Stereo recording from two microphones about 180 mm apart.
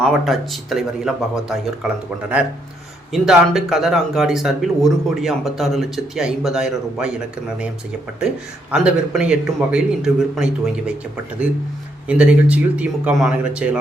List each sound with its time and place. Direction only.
0.0 s speech: centre (ahead or behind)
3.1 s speech: centre (ahead or behind)
8.7 s speech: 5° right (ahead or behind)
12.0 s speech: 5° right (ahead or behind)